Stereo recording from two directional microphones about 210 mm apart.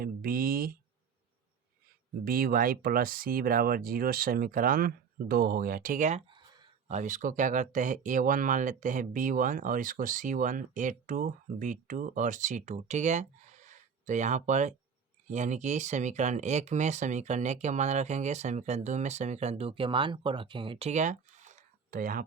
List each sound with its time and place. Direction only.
0.0 s speech: 45° right (ahead or behind)
2.2 s speech: 45° right (ahead or behind)